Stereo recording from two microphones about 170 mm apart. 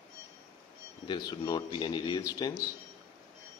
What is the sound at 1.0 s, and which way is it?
A man's voice, 25° left (ahead or behind).